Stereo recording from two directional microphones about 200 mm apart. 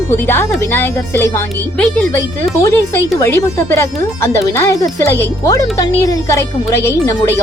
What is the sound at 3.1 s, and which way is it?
Speech, 15° left (ahead or behind).